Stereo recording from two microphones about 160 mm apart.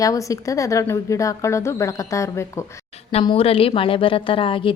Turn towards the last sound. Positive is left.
turn(degrees=35)  # may be behind; listen again after turning